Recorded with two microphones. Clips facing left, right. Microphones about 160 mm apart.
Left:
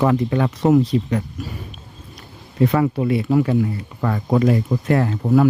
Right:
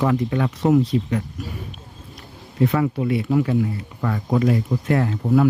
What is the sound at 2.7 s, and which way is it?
Speech, 40° left (ahead or behind).